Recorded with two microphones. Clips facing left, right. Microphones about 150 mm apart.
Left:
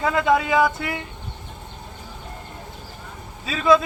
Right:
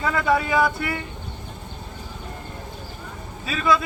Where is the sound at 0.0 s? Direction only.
20° left (ahead or behind).